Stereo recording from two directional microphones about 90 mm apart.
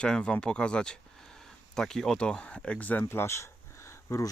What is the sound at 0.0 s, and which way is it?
Speech, 10° left (ahead or behind).